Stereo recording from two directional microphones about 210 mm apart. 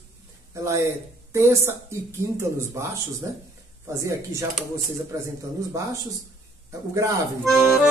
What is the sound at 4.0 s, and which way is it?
Speech, 15° right (ahead or behind).